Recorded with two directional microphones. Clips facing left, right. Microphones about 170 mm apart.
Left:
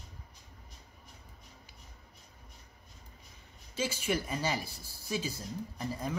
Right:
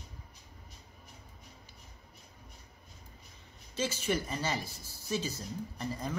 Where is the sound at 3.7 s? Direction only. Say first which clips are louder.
Even; 10° left (ahead or behind).